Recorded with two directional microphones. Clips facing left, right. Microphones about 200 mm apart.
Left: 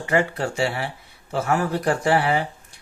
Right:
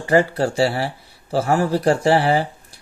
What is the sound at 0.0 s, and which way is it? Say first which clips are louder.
Speech: right 5 dB; 35° right (ahead or behind).